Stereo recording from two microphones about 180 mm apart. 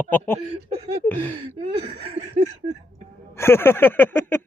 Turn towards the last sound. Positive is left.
turn(degrees=10)  # may be behind; listen again after turning